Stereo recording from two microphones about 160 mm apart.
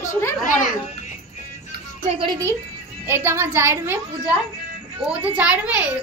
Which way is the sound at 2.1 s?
30° right (ahead or behind).